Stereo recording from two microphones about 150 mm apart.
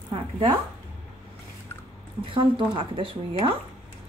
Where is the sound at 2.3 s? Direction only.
35° right (ahead or behind).